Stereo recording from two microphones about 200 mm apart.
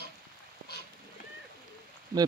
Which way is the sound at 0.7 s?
55° left (ahead or behind).